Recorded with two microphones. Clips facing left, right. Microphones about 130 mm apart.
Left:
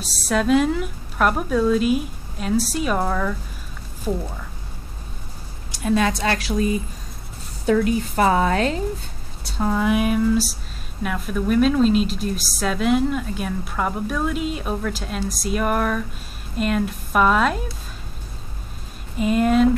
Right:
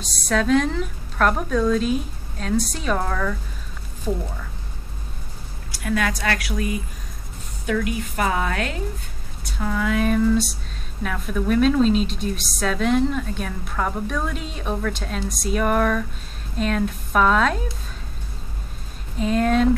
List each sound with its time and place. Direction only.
0.0 s a woman's voice: 5° left (ahead or behind)
5.7 s a woman's voice: 25° left (ahead or behind); by 17.6 s 5° left (ahead or behind)
19.1 s a woman's voice: 5° left (ahead or behind)